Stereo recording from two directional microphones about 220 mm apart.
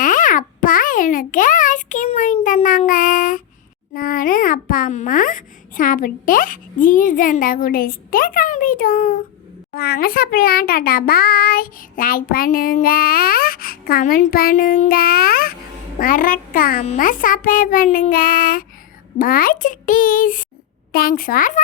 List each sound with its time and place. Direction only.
0.0 s a child's voice: 35° left (ahead or behind)